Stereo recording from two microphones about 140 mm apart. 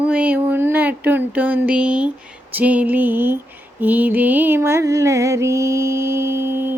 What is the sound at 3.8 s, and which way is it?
Music, 15° right (ahead or behind).